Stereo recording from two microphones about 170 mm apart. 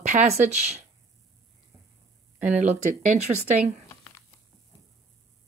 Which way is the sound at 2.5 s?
45° right (ahead or behind).